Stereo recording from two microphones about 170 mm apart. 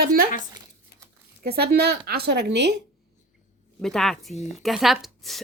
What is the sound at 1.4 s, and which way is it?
Speech, 70° right (ahead or behind).